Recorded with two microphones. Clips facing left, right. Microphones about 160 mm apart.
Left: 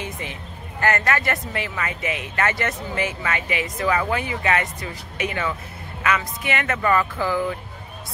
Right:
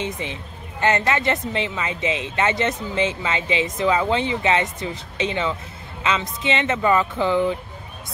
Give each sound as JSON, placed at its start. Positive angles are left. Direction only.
{"t": 0.0, "sound": "a woman's voice", "side_deg": -20}